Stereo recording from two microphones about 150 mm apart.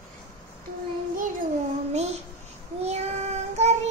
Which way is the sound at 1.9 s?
45° right (ahead or behind).